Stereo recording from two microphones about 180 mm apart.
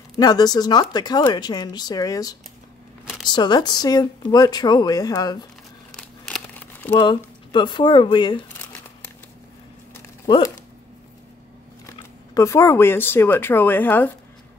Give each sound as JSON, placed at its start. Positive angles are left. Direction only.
{"t": 0.2, "sound": "speech", "side_deg": 20}
{"t": 5.9, "sound": "crumpling", "side_deg": 5}
{"t": 7.0, "sound": "speech", "side_deg": 25}
{"t": 10.2, "sound": "speech", "side_deg": 20}
{"t": 12.4, "sound": "speech", "side_deg": 15}